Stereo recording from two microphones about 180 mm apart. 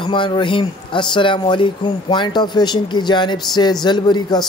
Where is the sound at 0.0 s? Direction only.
25° left (ahead or behind).